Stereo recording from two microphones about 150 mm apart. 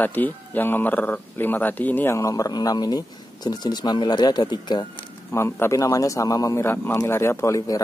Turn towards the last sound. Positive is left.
turn(degrees=20)  # may be behind; listen again after turning